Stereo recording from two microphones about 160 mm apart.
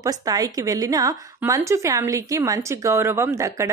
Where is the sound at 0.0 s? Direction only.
20° right (ahead or behind).